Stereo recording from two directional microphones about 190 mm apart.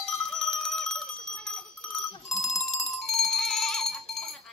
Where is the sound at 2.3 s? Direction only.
Centre (ahead or behind).